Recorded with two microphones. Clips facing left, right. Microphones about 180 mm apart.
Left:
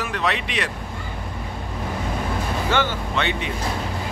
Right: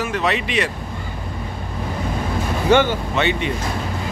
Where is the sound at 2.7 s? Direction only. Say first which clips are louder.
Right 8 dB; 15° right (ahead or behind).